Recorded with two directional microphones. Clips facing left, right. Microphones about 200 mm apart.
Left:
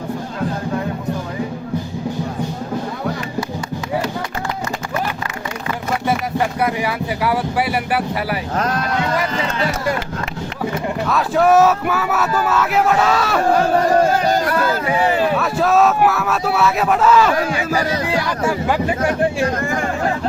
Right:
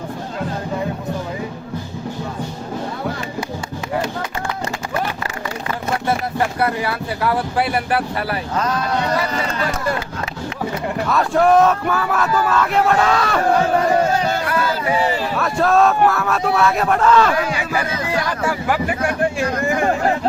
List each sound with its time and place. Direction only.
6.6 s speech: 15° left (ahead or behind)
11.0 s speech: centre (ahead or behind)
14.3 s speech: 40° left (ahead or behind)
15.4 s speech: centre (ahead or behind)
17.3 s speech: 40° left (ahead or behind)
18.3 s speech: 15° left (ahead or behind)